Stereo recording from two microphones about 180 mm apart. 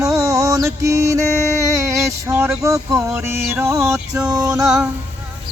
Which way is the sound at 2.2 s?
15° right (ahead or behind).